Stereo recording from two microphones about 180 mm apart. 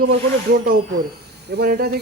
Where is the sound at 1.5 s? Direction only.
60° right (ahead or behind).